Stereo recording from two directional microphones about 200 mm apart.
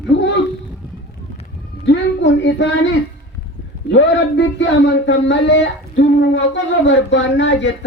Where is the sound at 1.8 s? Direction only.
65° left (ahead or behind).